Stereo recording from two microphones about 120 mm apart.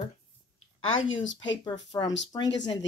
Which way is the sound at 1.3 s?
35° left (ahead or behind).